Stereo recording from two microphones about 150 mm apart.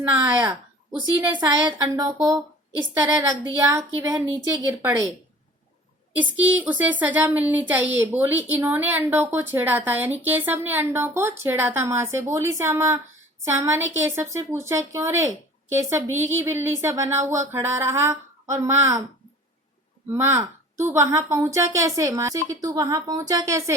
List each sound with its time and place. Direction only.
0.4 s a woman's voice: 25° right (ahead or behind)
6.1 s speech: 10° right (ahead or behind)
20.2 s a woman's voice: 15° right (ahead or behind)